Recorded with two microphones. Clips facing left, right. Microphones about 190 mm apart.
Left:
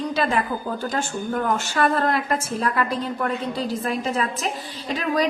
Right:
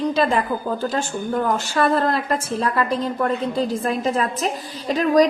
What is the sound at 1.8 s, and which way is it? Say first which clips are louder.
A woman's voice: right 2 dB; 40° right (ahead or behind).